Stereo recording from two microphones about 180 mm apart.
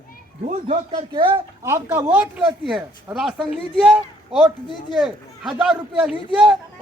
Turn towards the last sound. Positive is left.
turn(degrees=0)  # may be behind; listen again after turning